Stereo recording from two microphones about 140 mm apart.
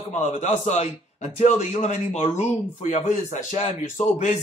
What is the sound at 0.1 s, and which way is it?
A man's voice, 55° left (ahead or behind).